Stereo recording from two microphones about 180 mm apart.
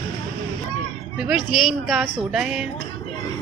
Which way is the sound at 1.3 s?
Centre (ahead or behind).